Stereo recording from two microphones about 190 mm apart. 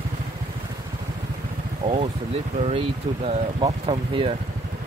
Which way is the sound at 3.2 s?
30° right (ahead or behind).